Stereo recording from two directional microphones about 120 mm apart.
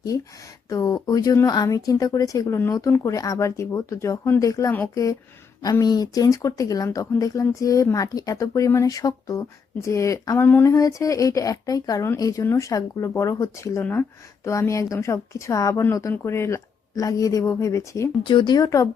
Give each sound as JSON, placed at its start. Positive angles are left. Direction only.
{"t": 0.7, "sound": "speech", "side_deg": 30}
{"t": 5.8, "sound": "speech", "side_deg": 35}
{"t": 18.3, "sound": "speech", "side_deg": 40}